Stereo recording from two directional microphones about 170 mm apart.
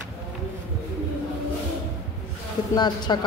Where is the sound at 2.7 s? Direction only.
25° left (ahead or behind).